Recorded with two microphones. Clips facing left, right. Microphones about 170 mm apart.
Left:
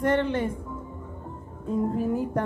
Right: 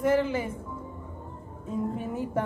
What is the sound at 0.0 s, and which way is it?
Speech, 5° right (ahead or behind).